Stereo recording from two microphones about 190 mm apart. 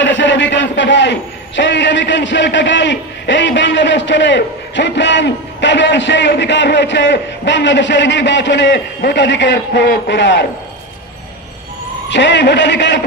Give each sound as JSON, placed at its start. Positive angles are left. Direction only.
{"t": 0.0, "sound": "a man's voice", "side_deg": 70}
{"t": 12.1, "sound": "a man's voice", "side_deg": 70}